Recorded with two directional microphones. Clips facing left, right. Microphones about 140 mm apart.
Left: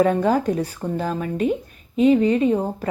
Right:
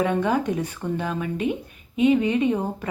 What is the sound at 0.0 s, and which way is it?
Speech, 35° left (ahead or behind).